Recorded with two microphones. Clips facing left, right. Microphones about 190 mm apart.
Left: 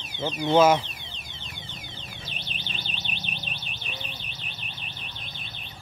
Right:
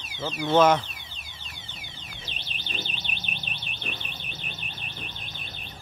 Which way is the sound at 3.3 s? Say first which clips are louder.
Left 1 dB; 55° right (ahead or behind).